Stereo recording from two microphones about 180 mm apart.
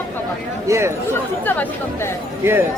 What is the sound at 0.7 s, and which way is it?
Speech, 15° right (ahead or behind).